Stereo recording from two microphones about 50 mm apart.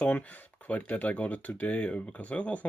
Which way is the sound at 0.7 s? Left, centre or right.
Left.